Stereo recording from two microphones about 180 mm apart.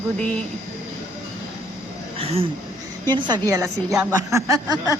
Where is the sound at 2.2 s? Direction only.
35° right (ahead or behind).